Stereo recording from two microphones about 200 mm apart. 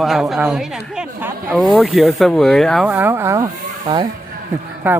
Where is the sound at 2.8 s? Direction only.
10° right (ahead or behind).